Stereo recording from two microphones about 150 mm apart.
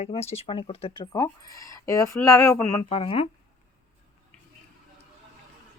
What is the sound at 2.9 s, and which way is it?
Speech, 40° left (ahead or behind).